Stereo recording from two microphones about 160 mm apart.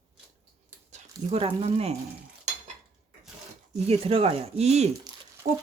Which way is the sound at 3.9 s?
40° right (ahead or behind).